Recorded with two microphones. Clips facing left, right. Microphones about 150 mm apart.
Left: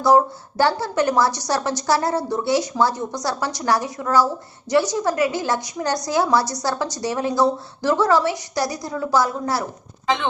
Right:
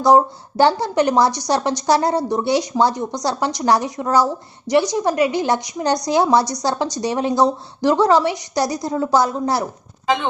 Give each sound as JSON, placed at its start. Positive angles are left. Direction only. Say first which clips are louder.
{"t": 0.0, "sound": "a woman's voice", "louder": "right 2 dB", "side_deg": -20}